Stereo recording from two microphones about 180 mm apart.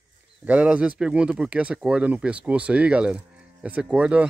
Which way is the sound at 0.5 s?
5° right (ahead or behind).